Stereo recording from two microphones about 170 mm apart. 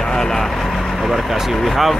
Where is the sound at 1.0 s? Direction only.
Centre (ahead or behind).